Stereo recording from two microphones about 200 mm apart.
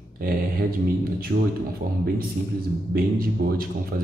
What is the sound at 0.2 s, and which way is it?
Speech, 45° right (ahead or behind).